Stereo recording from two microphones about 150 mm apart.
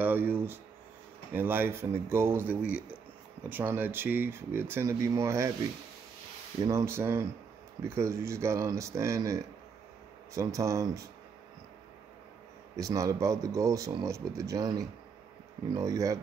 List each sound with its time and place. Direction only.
0.0 s a sound: 15° right (ahead or behind)
1.3 s speech: 15° right (ahead or behind)
6.6 s speech: 20° right (ahead or behind)
12.7 s speech: 20° right (ahead or behind)